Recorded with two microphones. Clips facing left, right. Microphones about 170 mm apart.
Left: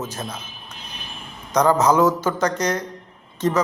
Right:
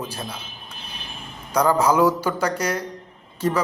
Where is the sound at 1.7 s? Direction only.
10° right (ahead or behind).